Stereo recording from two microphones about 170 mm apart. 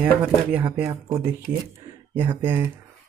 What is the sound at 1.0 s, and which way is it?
Speech, 25° right (ahead or behind).